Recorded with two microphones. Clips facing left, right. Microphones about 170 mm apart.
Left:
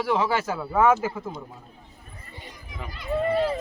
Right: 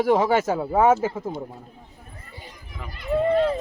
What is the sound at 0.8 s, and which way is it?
Speech, 25° right (ahead or behind).